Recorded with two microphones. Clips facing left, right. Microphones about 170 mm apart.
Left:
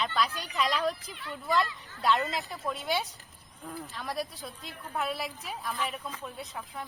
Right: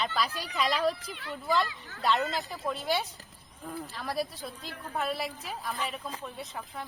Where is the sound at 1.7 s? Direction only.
75° right (ahead or behind).